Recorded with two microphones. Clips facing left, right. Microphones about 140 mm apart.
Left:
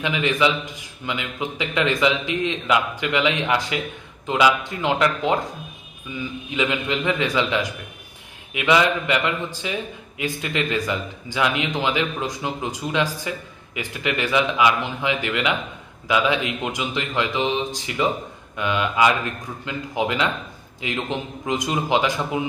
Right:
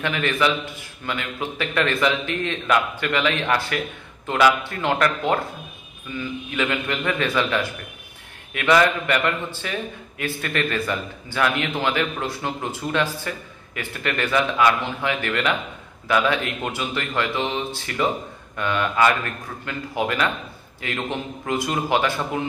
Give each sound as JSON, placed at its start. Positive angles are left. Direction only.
{"t": 0.0, "sound": "a man's voice", "side_deg": 15}